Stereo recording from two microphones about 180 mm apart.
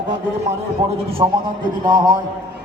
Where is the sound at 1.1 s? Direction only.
25° right (ahead or behind).